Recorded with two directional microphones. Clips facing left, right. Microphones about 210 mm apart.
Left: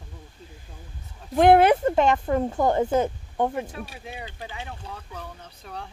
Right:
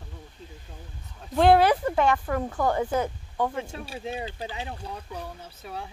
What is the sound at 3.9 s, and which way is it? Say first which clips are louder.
Speech: right 6 dB; 25° right (ahead or behind).